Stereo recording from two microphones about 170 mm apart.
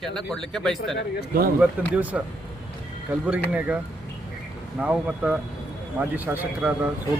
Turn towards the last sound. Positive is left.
turn(degrees=-10)  # may be behind; listen again after turning